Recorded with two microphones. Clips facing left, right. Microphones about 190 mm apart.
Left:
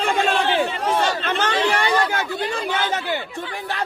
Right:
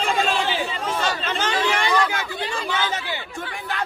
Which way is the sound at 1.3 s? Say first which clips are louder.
Left 3 dB; 55° left (ahead or behind).